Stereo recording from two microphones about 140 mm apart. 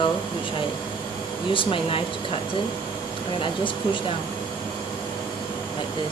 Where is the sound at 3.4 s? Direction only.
35° left (ahead or behind).